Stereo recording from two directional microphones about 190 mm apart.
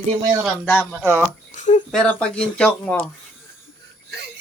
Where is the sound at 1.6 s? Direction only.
40° left (ahead or behind).